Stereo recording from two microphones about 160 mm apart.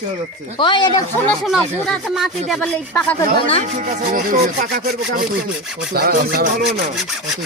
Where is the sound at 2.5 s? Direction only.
10° left (ahead or behind).